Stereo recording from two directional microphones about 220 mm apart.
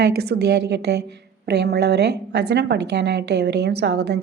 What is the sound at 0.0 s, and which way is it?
A woman's voice, 50° right (ahead or behind).